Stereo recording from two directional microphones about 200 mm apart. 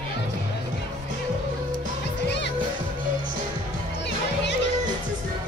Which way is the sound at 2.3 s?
60° left (ahead or behind).